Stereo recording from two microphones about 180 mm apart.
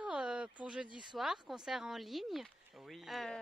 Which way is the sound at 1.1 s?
Centre (ahead or behind).